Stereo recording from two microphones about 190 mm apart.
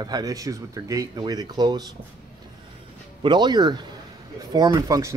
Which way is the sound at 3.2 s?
25° right (ahead or behind).